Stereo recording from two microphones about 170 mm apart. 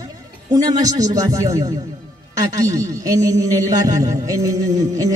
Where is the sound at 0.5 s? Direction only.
20° right (ahead or behind).